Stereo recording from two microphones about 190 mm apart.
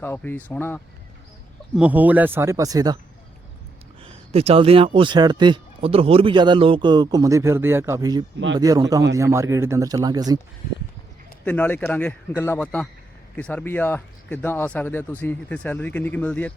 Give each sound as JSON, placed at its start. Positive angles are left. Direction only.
{"t": 0.0, "sound": "speech", "side_deg": 10}
{"t": 1.7, "sound": "speech", "side_deg": -5}
{"t": 4.0, "sound": "a man's voice", "side_deg": -30}
{"t": 11.4, "sound": "speech", "side_deg": 10}